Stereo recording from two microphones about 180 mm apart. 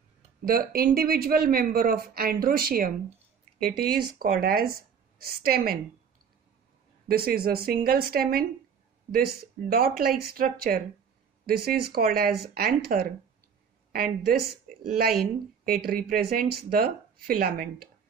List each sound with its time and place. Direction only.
0.5 s speech: 55° right (ahead or behind)
4.2 s speech: 55° right (ahead or behind)
7.1 s speech: 60° right (ahead or behind)